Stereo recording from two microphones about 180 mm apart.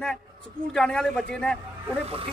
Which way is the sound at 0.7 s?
5° left (ahead or behind).